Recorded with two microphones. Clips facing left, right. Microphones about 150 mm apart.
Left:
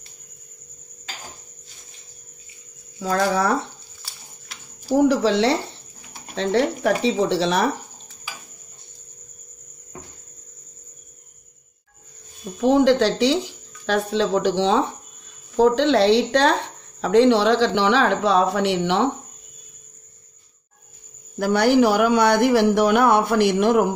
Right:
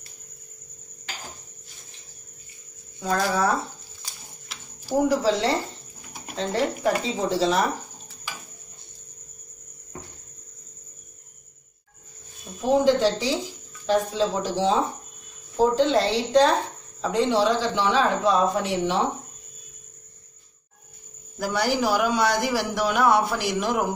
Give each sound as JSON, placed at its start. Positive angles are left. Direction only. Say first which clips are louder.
{"t": 5.0, "sound": "speech", "louder": "left 4 dB", "side_deg": 75}
{"t": 12.5, "sound": "speech", "louder": "left 4 dB", "side_deg": 70}
{"t": 21.4, "sound": "speech", "louder": "left 8 dB", "side_deg": 60}